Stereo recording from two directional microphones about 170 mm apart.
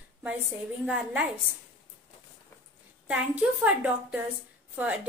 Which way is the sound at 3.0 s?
5° right (ahead or behind).